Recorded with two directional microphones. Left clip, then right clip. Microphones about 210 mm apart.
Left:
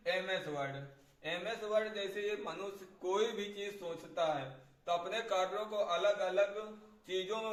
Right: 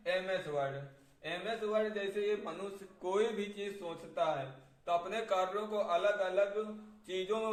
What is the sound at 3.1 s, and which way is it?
Speech, 25° right (ahead or behind).